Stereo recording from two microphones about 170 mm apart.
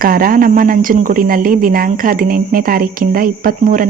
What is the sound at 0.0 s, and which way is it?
Speech, 55° right (ahead or behind).